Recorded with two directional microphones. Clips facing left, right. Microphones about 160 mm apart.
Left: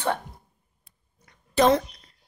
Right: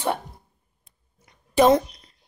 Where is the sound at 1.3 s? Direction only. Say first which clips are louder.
Right 3 dB; 10° right (ahead or behind).